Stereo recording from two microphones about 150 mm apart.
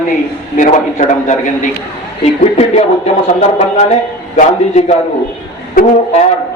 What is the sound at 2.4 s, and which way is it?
A man's voice, 45° left (ahead or behind).